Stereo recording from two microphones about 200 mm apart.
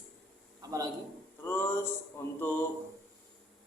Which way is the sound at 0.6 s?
20° right (ahead or behind).